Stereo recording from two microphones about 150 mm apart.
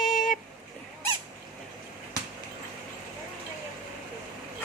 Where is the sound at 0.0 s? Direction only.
Centre (ahead or behind).